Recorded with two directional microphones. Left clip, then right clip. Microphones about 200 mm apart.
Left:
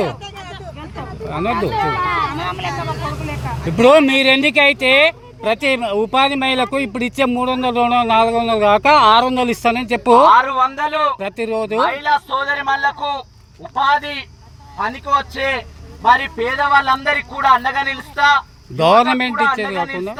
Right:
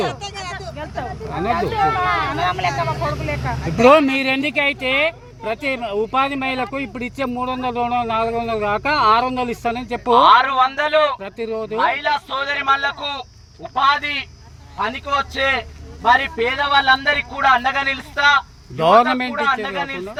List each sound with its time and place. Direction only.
0.1 s vehicle: 55° right (ahead or behind)
1.3 s a man's voice: 15° left (ahead or behind)
2.0 s speech: 50° right (ahead or behind)
3.8 s speech: 20° left (ahead or behind)
10.2 s a man's voice: 10° left (ahead or behind)
11.2 s speech: 30° left (ahead or behind)
11.8 s a man's voice: 5° left (ahead or behind)
18.8 s a man's voice: 15° left (ahead or behind)